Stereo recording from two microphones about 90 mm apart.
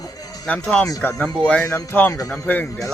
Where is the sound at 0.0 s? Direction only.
40° left (ahead or behind).